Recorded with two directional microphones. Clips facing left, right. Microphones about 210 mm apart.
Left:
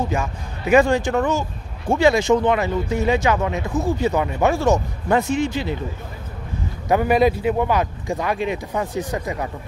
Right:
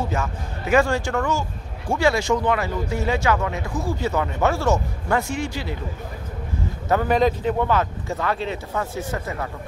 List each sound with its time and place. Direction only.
0.1 s speech: 15° left (ahead or behind)
6.9 s speech: 10° left (ahead or behind)